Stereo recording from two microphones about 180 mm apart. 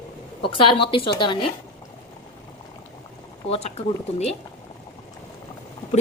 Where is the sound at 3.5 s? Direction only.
35° left (ahead or behind).